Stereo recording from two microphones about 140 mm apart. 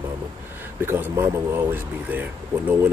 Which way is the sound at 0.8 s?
15° right (ahead or behind).